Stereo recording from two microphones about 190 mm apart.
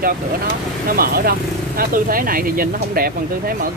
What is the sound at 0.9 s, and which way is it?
Speech, 50° right (ahead or behind).